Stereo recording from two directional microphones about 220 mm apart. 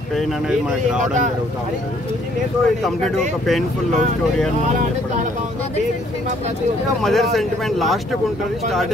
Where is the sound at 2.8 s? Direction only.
Centre (ahead or behind).